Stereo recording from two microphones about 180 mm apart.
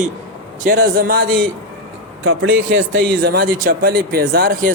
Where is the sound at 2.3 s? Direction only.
90° right.